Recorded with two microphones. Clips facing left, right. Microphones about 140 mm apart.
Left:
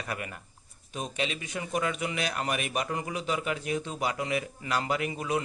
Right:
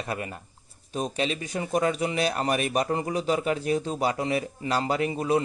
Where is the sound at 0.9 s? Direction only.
35° right (ahead or behind).